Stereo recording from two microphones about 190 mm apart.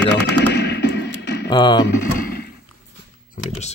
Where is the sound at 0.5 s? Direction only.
60° left (ahead or behind).